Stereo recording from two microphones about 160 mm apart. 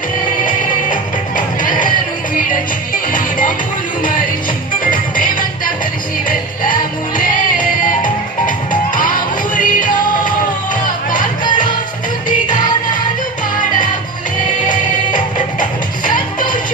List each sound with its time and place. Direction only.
0.5 s music: 55° left (ahead or behind)
16.1 s music: 55° left (ahead or behind)